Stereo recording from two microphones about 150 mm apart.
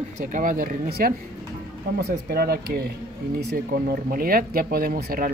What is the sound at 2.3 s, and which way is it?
Speech, 90° right.